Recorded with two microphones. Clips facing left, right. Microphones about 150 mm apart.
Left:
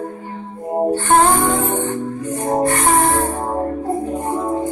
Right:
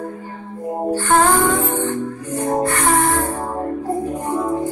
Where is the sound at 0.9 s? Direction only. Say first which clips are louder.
Even; 25° left (ahead or behind).